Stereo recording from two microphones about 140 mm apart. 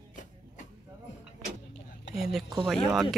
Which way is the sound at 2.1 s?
Centre (ahead or behind).